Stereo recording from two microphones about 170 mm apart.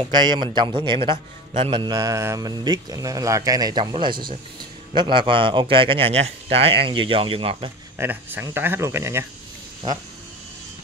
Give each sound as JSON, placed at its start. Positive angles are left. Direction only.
{"t": 0.0, "sound": "a man's voice", "side_deg": -25}
{"t": 8.0, "sound": "speech", "side_deg": -10}